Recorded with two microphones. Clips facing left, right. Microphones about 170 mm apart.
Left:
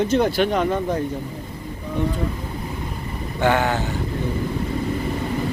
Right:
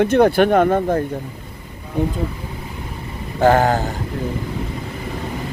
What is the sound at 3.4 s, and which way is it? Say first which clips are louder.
Speech: right 5 dB; 40° right (ahead or behind).